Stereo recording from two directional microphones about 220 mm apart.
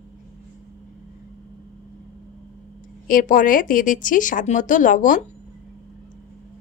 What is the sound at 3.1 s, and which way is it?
A woman's voice, 40° left (ahead or behind).